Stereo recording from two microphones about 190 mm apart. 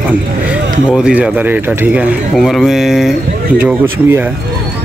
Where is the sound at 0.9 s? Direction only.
5° right (ahead or behind).